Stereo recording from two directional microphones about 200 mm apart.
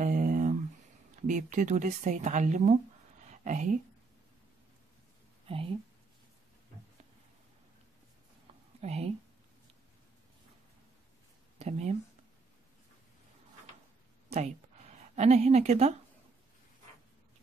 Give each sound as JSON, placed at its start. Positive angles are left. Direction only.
{"t": 0.0, "sound": "a sound", "side_deg": -40}
{"t": 1.2, "sound": "speech", "side_deg": -40}
{"t": 3.3, "sound": "a sound", "side_deg": -40}
{"t": 5.5, "sound": "speech", "side_deg": -25}
{"t": 8.8, "sound": "speech", "side_deg": -30}
{"t": 11.5, "sound": "speech", "side_deg": -30}
{"t": 15.1, "sound": "speech", "side_deg": -35}